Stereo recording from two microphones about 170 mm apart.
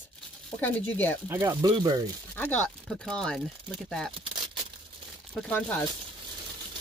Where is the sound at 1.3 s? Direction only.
15° right (ahead or behind).